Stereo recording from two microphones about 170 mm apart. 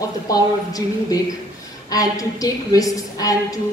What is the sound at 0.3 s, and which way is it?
A woman's voice, 20° left (ahead or behind).